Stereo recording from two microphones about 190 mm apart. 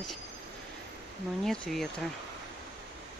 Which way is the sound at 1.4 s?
Centre (ahead or behind).